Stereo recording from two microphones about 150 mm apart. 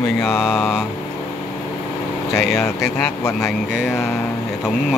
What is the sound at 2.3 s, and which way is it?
Speech, 5° left (ahead or behind).